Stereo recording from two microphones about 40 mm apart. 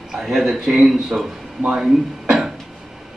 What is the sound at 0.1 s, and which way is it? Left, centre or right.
Speech, centre.